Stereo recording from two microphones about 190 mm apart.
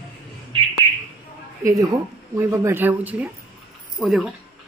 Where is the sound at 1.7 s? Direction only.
15° right (ahead or behind); by 4.3 s centre (ahead or behind).